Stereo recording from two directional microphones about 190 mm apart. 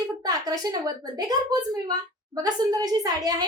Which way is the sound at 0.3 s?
20° right (ahead or behind).